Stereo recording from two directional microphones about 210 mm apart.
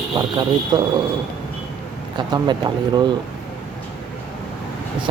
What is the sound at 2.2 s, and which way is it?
Speech, 20° right (ahead or behind).